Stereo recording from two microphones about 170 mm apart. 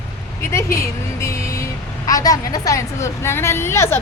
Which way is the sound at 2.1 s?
20° left (ahead or behind).